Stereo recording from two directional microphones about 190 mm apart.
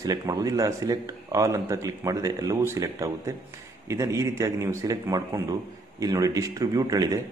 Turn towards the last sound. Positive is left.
turn(degrees=-20)  # may be behind; listen again after turning